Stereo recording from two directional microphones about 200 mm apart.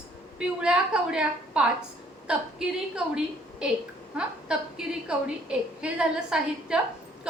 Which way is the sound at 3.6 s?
5° right (ahead or behind).